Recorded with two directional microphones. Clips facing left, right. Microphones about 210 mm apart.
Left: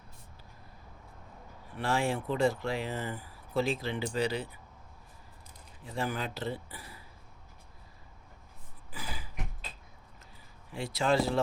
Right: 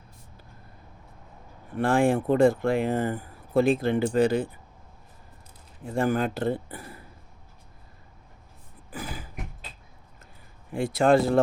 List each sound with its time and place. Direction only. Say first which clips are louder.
1.7 s speech: right 9 dB; 50° right (ahead or behind)
5.8 s speech: right 10 dB; 50° right (ahead or behind)
8.9 s a sound: right 7 dB; 50° right (ahead or behind)
10.7 s speech: right 9 dB; 50° right (ahead or behind)